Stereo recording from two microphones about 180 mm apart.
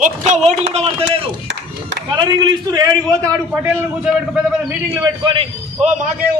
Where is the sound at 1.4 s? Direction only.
80° right.